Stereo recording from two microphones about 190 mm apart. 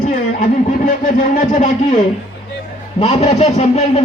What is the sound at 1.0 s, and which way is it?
Speech, 45° left (ahead or behind).